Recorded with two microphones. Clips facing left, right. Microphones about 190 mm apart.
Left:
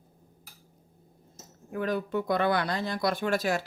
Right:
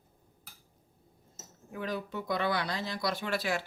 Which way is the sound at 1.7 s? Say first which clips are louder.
Left 7 dB; 55° left (ahead or behind).